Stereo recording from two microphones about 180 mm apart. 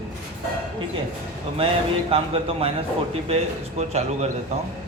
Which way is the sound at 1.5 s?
30° right (ahead or behind).